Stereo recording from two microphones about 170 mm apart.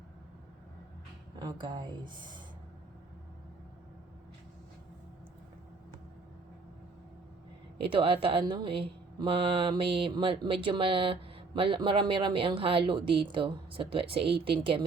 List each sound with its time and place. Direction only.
1.4 s speech: 25° right (ahead or behind)
7.8 s speech: 30° right (ahead or behind)